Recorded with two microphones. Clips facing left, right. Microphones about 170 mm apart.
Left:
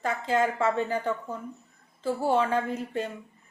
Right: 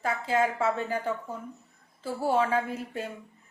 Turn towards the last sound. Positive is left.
turn(degrees=-5)  # may be behind; listen again after turning